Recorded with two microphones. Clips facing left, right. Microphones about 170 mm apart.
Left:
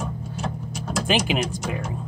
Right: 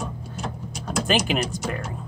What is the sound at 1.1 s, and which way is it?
Speech, 15° left (ahead or behind).